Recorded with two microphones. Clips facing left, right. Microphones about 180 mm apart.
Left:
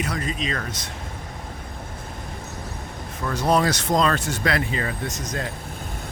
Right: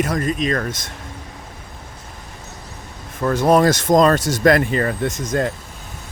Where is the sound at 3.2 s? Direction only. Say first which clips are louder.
Right 7 dB; 50° right (ahead or behind).